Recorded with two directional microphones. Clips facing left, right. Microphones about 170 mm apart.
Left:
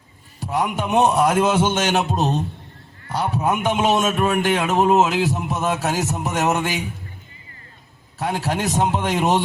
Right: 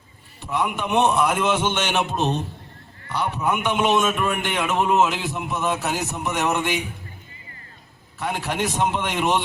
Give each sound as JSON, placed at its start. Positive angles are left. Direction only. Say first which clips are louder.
{"t": 0.3, "sound": "a man's voice", "louder": "left 2 dB", "side_deg": 40}
{"t": 8.2, "sound": "a man's voice", "louder": "left 2 dB", "side_deg": 40}